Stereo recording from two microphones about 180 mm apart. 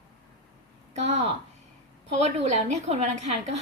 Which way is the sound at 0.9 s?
40° right (ahead or behind).